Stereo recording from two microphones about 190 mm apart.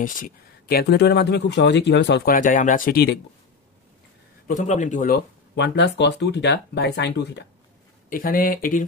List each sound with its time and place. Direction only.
0.0 s speech: 45° left (ahead or behind)
4.5 s speech: 40° left (ahead or behind)
5.6 s speech: 65° left (ahead or behind)
8.1 s speech: 50° left (ahead or behind)